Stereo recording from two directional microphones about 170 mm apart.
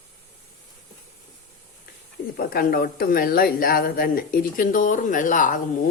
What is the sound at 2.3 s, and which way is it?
Speech, 60° left (ahead or behind).